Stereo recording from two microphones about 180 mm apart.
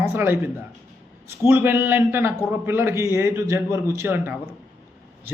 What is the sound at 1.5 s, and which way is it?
Speech, 10° right (ahead or behind).